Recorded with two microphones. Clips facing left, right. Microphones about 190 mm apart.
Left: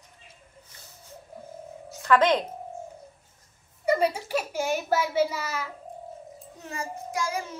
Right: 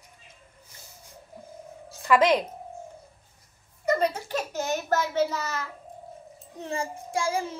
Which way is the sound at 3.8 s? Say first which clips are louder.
Left 1 dB; 10° left (ahead or behind).